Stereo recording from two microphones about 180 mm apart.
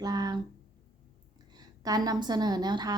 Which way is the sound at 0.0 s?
20° right (ahead or behind).